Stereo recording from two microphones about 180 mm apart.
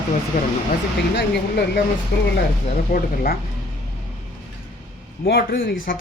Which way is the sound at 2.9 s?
50° left (ahead or behind).